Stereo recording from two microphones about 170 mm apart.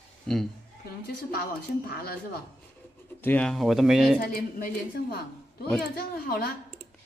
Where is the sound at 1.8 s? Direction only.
65° left (ahead or behind).